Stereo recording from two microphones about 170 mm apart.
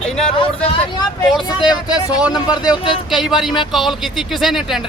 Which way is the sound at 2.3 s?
25° left (ahead or behind).